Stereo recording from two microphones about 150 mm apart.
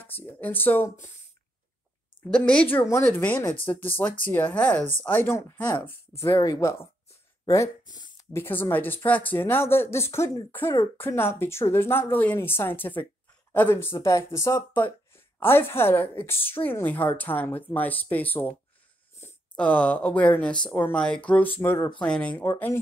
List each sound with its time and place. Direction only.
0.0 s speech: 15° left (ahead or behind)
2.3 s speech: 5° left (ahead or behind)
7.4 s a sound: 20° left (ahead or behind)
8.3 s speech: 15° left (ahead or behind)
19.1 s a sound: 10° left (ahead or behind)
20.3 s speech: 10° left (ahead or behind)
22.4 s speech: 20° left (ahead or behind)